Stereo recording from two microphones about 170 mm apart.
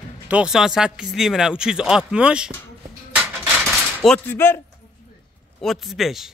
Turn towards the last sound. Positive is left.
turn(degrees=0)  # may be behind; listen again after turning